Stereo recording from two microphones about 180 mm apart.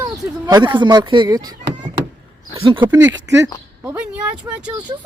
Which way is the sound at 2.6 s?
30° right (ahead or behind).